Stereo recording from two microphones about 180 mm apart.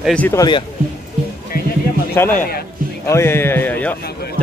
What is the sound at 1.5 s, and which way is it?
Music, 55° left (ahead or behind).